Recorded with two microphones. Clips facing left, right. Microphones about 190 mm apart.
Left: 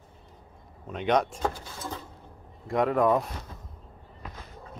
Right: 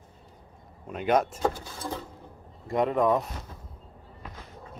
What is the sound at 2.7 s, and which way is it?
Speech, centre (ahead or behind).